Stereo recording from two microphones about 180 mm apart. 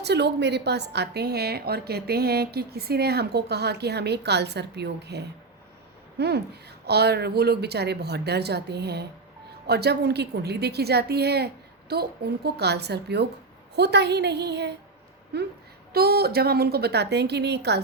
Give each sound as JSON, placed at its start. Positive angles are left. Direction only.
{"t": 0.0, "sound": "a woman's voice", "side_deg": -70}